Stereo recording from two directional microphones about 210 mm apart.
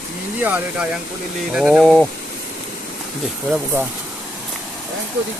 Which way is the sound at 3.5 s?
10° right (ahead or behind).